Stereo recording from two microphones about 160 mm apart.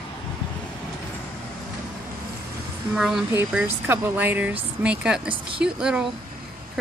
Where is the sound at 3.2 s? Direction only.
15° right (ahead or behind).